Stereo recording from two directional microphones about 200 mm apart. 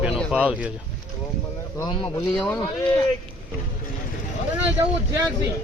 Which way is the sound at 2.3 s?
5° left (ahead or behind).